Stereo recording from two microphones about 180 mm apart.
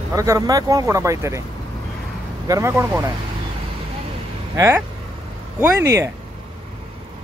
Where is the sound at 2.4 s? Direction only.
15° right (ahead or behind).